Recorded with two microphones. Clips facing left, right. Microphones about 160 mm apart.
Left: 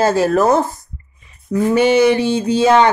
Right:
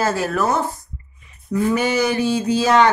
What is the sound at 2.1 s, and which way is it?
Speech, 75° left (ahead or behind).